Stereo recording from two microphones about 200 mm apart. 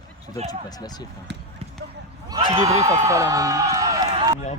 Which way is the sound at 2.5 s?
15° right (ahead or behind).